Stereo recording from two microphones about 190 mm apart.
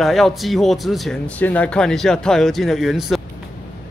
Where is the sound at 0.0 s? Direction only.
Centre (ahead or behind).